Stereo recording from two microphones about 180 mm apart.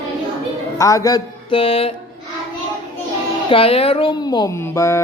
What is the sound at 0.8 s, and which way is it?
Speech, 20° left (ahead or behind).